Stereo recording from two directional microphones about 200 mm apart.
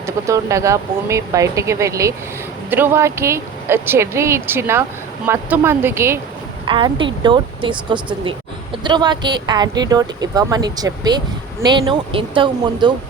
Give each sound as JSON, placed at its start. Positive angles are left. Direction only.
{"t": 0.0, "sound": "speech", "side_deg": -15}
{"t": 6.7, "sound": "speech", "side_deg": -25}